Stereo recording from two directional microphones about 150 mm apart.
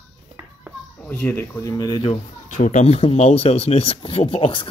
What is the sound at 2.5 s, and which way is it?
Speech, 55° left (ahead or behind).